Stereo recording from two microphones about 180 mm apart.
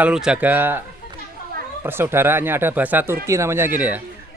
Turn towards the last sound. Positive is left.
turn(degrees=-15)  # may be behind; listen again after turning